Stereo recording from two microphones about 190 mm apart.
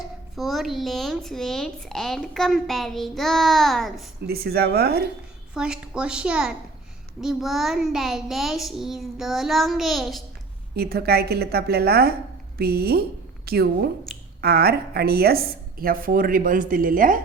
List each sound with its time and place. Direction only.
0.3 s speech: centre (ahead or behind)
4.3 s a woman's voice: 55° right (ahead or behind)
5.5 s speech: 5° right (ahead or behind)
10.8 s a woman's voice: 55° right (ahead or behind)